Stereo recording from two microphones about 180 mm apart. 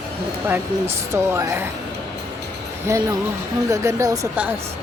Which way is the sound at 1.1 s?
15° right (ahead or behind).